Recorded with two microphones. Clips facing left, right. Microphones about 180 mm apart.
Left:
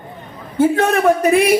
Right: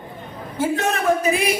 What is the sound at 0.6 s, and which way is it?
Speech, 60° left (ahead or behind).